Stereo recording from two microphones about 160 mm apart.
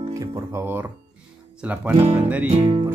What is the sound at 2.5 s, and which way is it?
Speech, 35° right (ahead or behind).